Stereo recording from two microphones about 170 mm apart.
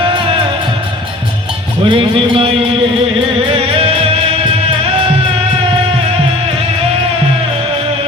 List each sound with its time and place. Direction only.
0.0 s music: 30° right (ahead or behind)
1.8 s music: 30° right (ahead or behind)